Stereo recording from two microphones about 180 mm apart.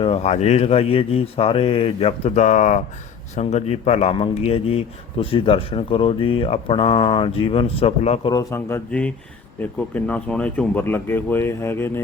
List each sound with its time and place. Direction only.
0.0 s a man's voice: 35° left (ahead or behind)
8.3 s speech: 20° left (ahead or behind)